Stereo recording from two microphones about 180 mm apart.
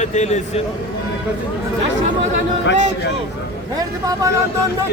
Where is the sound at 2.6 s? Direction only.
85° left.